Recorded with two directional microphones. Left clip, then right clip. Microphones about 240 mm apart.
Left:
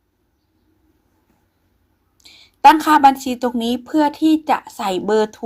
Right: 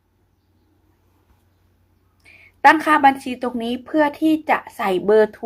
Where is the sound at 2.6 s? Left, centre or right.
Left.